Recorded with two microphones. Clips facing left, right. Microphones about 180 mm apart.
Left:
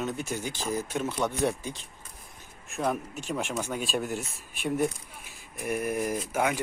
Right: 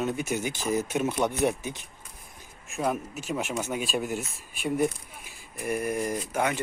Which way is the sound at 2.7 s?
Centre (ahead or behind).